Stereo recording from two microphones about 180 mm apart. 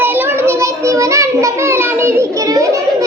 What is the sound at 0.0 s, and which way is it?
Child singing, 10° right (ahead or behind).